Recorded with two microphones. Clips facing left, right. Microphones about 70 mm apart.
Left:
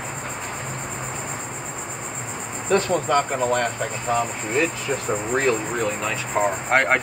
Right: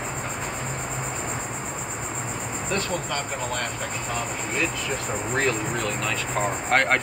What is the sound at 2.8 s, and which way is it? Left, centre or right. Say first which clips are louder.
Speech: left 11 dB; left.